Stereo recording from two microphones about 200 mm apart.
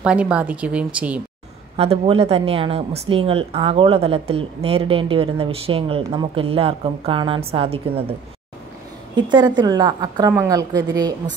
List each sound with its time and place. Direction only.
0.0 s speech: 5° right (ahead or behind)
1.8 s a woman's voice: 30° right (ahead or behind)